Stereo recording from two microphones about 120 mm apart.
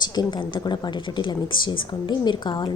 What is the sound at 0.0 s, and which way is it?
A woman's voice, 35° left (ahead or behind).